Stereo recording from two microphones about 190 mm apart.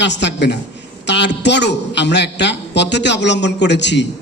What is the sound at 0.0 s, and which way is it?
A man's voice, 65° left (ahead or behind).